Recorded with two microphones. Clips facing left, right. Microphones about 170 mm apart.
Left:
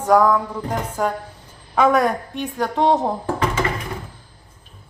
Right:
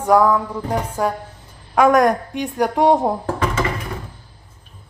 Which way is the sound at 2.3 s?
15° right (ahead or behind).